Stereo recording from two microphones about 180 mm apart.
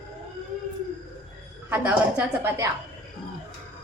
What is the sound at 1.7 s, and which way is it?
Speech, 10° right (ahead or behind).